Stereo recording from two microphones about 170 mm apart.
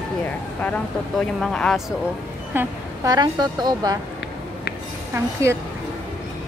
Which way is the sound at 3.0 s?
25° right (ahead or behind).